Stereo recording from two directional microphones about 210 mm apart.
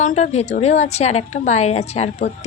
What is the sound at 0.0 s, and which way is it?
A woman's voice, 35° left (ahead or behind).